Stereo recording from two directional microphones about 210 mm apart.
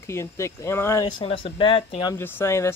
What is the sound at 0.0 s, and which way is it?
Speech, 15° left (ahead or behind).